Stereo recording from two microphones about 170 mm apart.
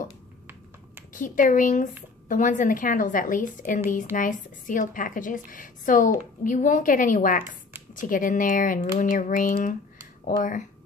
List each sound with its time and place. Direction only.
1.1 s speech: 50° left (ahead or behind)